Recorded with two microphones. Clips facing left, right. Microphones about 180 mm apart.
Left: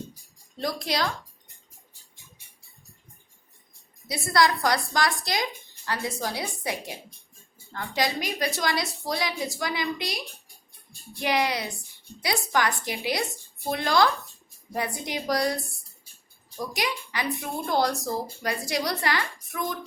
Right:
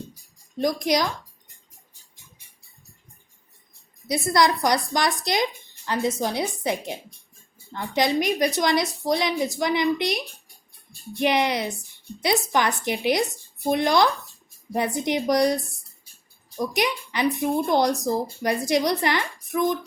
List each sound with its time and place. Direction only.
0.6 s speech: 15° right (ahead or behind)
4.1 s a woman's voice: 20° right (ahead or behind)